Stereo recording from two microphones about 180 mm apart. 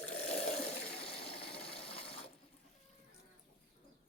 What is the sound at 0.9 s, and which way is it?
Water, 30° left (ahead or behind).